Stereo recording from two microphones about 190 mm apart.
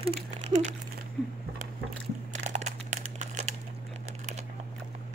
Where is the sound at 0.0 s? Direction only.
35° right (ahead or behind).